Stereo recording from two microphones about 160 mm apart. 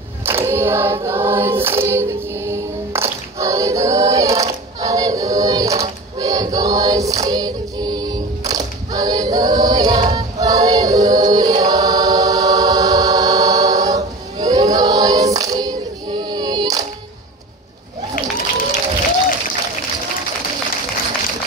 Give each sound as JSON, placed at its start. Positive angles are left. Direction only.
{"t": 0.2, "sound": "choir", "side_deg": -15}
{"t": 16.2, "sound": "child singing", "side_deg": -25}